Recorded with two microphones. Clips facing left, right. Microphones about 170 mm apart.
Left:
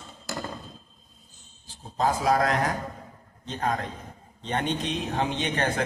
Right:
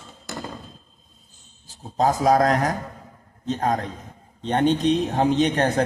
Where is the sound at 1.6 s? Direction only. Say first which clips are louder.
Right 5 dB; 40° right (ahead or behind).